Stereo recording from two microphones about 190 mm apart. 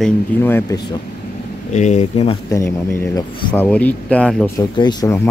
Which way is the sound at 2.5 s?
15° left (ahead or behind).